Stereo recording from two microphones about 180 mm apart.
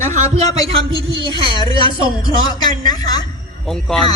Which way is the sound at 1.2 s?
25° right (ahead or behind).